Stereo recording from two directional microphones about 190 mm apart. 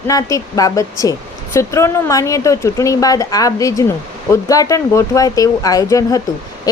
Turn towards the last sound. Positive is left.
turn(degrees=20)  # may be behind; listen again after turning